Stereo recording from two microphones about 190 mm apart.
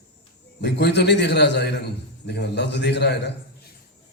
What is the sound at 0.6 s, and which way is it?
A man's voice, 60° left (ahead or behind).